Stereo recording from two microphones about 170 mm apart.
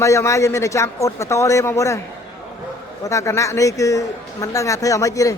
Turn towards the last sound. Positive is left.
turn(degrees=20)  # may be behind; listen again after turning